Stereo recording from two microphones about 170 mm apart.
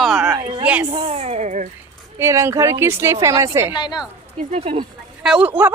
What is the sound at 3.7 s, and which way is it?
Speech, 25° left (ahead or behind).